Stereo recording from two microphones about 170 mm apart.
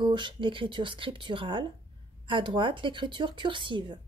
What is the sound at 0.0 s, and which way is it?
Speech, 25° right (ahead or behind).